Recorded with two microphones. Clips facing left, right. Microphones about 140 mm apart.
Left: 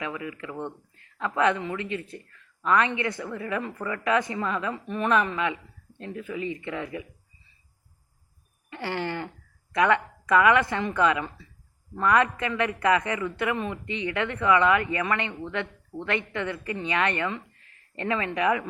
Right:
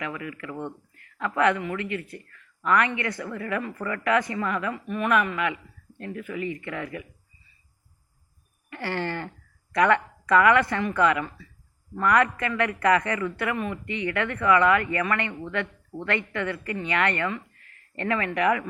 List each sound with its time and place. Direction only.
0.0 s speech: 20° left (ahead or behind)
8.7 s a sound: 20° left (ahead or behind)
9.7 s speech: 15° left (ahead or behind)